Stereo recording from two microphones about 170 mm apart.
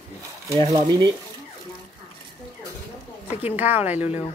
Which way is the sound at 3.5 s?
10° right (ahead or behind).